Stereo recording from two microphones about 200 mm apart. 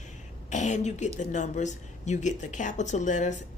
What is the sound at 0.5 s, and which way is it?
Speech, 35° left (ahead or behind).